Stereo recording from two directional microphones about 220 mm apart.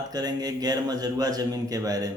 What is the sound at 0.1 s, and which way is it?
Speech, 15° right (ahead or behind).